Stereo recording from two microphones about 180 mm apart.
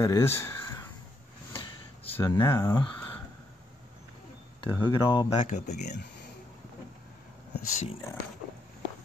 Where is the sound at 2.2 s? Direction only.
15° left (ahead or behind).